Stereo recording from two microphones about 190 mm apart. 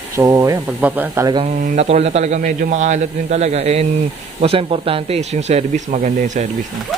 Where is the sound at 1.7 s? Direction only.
35° right (ahead or behind).